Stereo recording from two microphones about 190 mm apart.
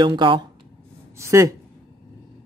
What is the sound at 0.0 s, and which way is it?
Speech, 25° right (ahead or behind).